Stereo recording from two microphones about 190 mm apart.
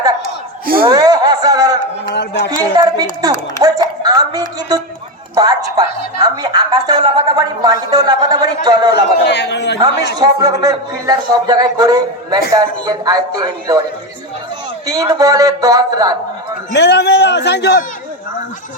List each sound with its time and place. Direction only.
0.6 s a sound: 50° right (ahead or behind)
0.9 s a sound: 20° right (ahead or behind)
2.7 s a woman's voice: 20° right (ahead or behind)
8.9 s a man's voice: 60° left (ahead or behind)
10.2 s a woman's voice: 20° right (ahead or behind)
14.8 s a woman's voice: 20° right (ahead or behind)
16.7 s a man's voice: 65° left (ahead or behind)